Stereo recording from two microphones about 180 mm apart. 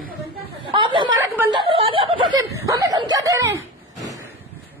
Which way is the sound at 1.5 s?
30° right (ahead or behind).